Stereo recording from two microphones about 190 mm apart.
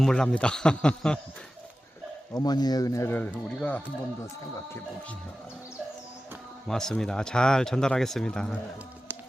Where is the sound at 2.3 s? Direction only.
20° left (ahead or behind).